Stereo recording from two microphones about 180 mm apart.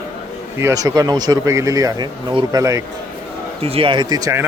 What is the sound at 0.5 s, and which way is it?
Speech, 15° right (ahead or behind).